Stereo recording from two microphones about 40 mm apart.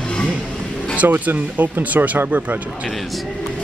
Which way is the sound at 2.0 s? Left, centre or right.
Right.